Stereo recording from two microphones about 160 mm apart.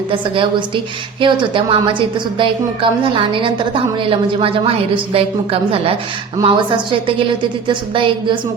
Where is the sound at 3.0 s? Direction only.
35° right (ahead or behind).